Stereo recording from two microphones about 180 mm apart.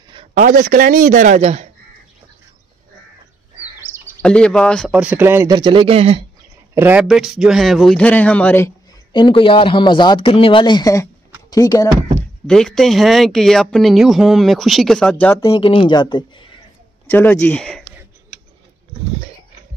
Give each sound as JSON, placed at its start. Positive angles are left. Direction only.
{"t": 0.1, "sound": "a sound", "side_deg": -30}
{"t": 0.4, "sound": "a man's voice", "side_deg": -45}
{"t": 3.8, "sound": "bird", "side_deg": -15}
{"t": 4.2, "sound": "speech", "side_deg": 5}
{"t": 4.9, "sound": "speech", "side_deg": -10}
{"t": 5.6, "sound": "speech", "side_deg": -30}
{"t": 6.7, "sound": "speech", "side_deg": -10}
{"t": 9.1, "sound": "speech", "side_deg": 25}
{"t": 12.4, "sound": "speech", "side_deg": 5}
{"t": 15.5, "sound": "speech", "side_deg": 30}
{"t": 17.1, "sound": "speech", "side_deg": 10}